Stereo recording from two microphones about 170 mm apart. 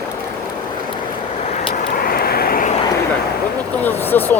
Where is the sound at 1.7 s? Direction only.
55° left (ahead or behind).